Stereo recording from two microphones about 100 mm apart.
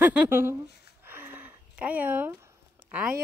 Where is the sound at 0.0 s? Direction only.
15° right (ahead or behind).